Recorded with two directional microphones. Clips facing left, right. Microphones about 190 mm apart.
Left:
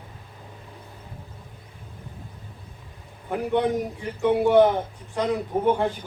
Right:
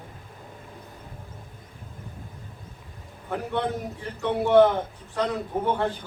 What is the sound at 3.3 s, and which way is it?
A man's voice, 15° left (ahead or behind).